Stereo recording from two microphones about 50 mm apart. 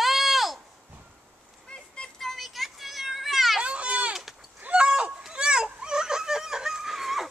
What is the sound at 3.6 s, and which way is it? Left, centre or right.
Children playing, right.